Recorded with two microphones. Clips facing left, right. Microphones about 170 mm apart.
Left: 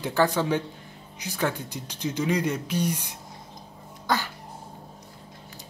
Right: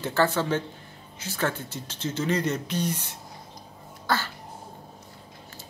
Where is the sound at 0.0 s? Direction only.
15° left (ahead or behind).